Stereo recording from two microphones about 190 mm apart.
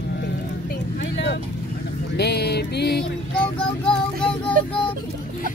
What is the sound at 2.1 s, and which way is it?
Music, 60° left (ahead or behind).